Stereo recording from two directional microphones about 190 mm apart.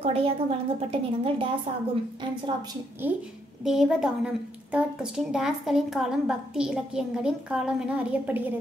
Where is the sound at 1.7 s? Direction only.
30° right (ahead or behind).